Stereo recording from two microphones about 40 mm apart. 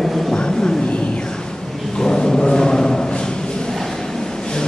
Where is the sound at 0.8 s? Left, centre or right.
Left.